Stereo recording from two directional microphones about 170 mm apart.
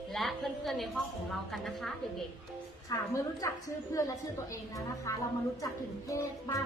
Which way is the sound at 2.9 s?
20° left (ahead or behind).